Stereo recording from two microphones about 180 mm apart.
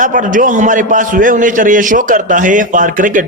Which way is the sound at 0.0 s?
45° right (ahead or behind).